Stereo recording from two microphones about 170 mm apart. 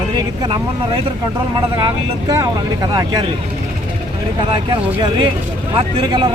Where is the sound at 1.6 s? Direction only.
25° right (ahead or behind).